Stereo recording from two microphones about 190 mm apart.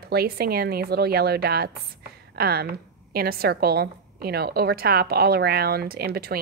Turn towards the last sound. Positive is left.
turn(degrees=-55)  # may be behind; listen again after turning